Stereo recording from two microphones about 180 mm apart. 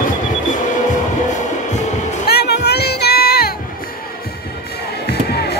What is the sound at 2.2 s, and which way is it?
Music, 65° left (ahead or behind).